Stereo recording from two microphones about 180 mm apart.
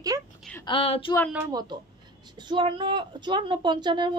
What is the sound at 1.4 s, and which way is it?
A woman's voice, 25° right (ahead or behind).